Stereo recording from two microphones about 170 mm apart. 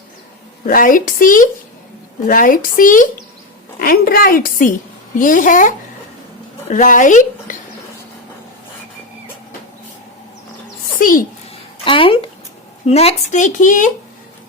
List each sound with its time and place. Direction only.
0.6 s a woman's voice: 55° left (ahead or behind)
11.5 s a sound: 30° left (ahead or behind)
12.8 s speech: 35° left (ahead or behind)